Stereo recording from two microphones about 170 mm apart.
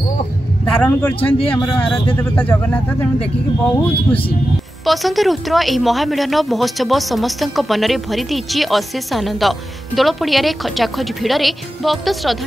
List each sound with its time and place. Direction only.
0.8 s speech: 10° left (ahead or behind)
1.4 s speech: 35° left (ahead or behind)
1.9 s speech: 10° left (ahead or behind)